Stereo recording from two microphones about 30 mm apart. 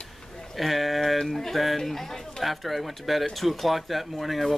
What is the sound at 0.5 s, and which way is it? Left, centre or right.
Speech, centre.